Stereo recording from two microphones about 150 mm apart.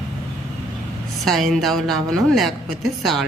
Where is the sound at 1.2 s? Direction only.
Centre (ahead or behind).